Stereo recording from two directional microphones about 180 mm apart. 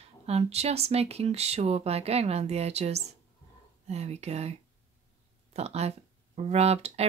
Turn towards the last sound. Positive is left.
turn(degrees=-35)  # may be behind; listen again after turning